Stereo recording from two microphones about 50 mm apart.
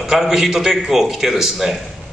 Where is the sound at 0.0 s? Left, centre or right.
Centre.